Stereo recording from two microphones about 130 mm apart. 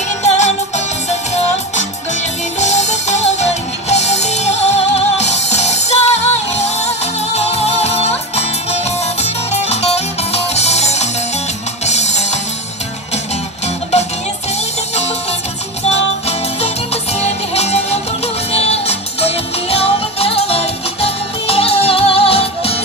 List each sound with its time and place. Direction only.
0.2 s music: 60° left (ahead or behind)
15.9 s music: 50° left (ahead or behind)